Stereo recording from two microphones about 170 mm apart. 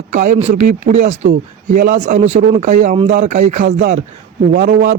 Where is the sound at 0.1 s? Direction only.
50° right (ahead or behind).